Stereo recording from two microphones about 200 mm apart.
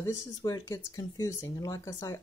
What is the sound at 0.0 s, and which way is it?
Speech, 20° left (ahead or behind).